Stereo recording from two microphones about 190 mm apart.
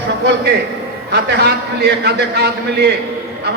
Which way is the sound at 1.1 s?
60° right (ahead or behind).